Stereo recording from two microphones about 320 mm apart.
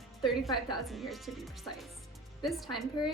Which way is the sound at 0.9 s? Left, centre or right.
Centre.